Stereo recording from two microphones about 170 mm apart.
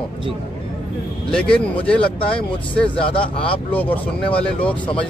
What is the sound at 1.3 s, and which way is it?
Speech, 5° left (ahead or behind).